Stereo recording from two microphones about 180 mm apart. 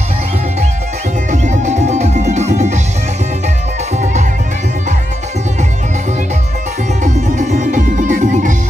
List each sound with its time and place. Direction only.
1.3 s music: 40° right (ahead or behind)
4.0 s music: 40° right (ahead or behind)
7.0 s music: 40° right (ahead or behind)